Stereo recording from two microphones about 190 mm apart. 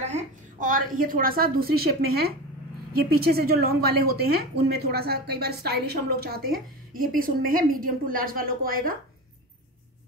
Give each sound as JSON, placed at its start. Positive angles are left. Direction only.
{"t": 0.0, "sound": "a woman's voice", "side_deg": -40}